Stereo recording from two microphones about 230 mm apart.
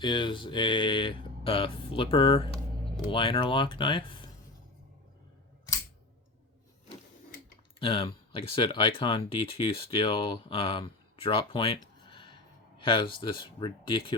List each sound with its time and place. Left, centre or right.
0.0 s speech: left
7.8 s speech: left